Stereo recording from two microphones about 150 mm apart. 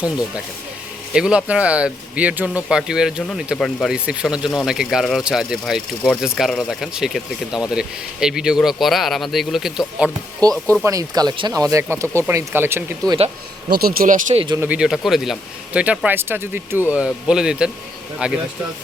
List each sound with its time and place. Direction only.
1.1 s speech: 5° right (ahead or behind)
10.8 s speech: 25° right (ahead or behind)
13.7 s speech: 90° right; by 14.3 s 70° right (ahead or behind)
14.3 s speech: 35° right (ahead or behind)
14.6 s speech: 10° right (ahead or behind)